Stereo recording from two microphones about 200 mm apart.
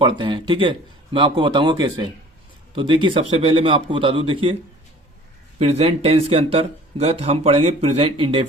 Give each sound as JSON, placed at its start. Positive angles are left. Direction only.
{"t": 0.0, "sound": "speech", "side_deg": -25}
{"t": 5.5, "sound": "speech", "side_deg": -30}